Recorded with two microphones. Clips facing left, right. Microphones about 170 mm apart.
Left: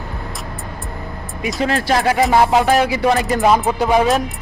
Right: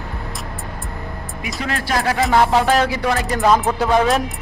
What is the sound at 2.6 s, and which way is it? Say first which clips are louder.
Music: left 2 dB; 5° left (ahead or behind).